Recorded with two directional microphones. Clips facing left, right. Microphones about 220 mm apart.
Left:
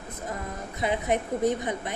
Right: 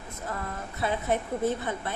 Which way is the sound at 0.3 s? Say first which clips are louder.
Even; 15° left (ahead or behind).